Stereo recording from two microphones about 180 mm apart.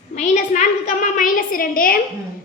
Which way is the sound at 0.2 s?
40° left (ahead or behind).